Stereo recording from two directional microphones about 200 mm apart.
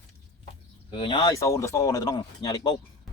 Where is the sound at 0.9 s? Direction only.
25° left (ahead or behind).